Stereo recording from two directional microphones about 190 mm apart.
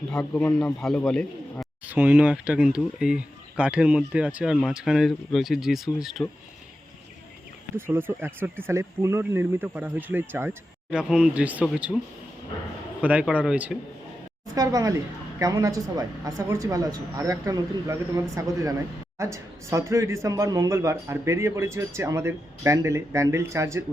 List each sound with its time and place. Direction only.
0.1 s speech: 5° left (ahead or behind)
1.9 s speech: 10° right (ahead or behind)
7.8 s speech: 10° right (ahead or behind)
13.0 s speech: 10° right (ahead or behind)
14.5 s speech: 20° right (ahead or behind)